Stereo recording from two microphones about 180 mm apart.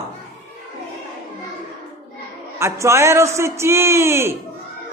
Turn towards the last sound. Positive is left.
turn(degrees=-15)  # may be behind; listen again after turning